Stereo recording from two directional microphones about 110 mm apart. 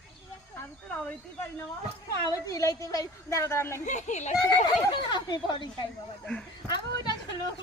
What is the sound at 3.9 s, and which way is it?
Speech, 90° left.